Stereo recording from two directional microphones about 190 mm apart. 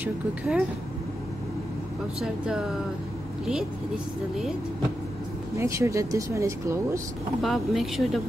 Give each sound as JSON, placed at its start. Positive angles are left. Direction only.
{"t": 0.0, "sound": "speech", "side_deg": -5}
{"t": 2.1, "sound": "speech", "side_deg": -5}
{"t": 5.6, "sound": "speech", "side_deg": -15}
{"t": 7.4, "sound": "speech", "side_deg": 0}